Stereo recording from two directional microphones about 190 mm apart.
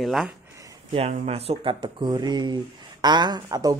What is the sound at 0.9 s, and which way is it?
Speech, 30° right (ahead or behind).